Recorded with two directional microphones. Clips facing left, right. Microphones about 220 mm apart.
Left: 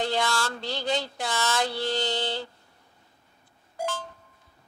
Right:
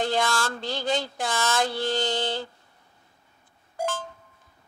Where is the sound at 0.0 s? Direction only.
50° right (ahead or behind).